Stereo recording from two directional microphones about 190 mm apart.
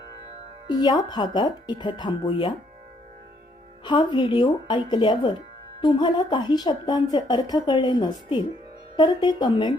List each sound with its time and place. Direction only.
0.7 s a woman's voice: 20° left (ahead or behind)
3.8 s a woman's voice: 25° left (ahead or behind)